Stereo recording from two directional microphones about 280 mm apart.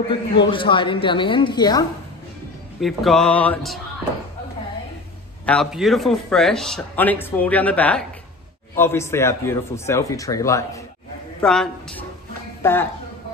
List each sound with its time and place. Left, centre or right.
0.1 s a man's voice: centre
2.8 s a man's voice: centre
5.4 s a man's voice: centre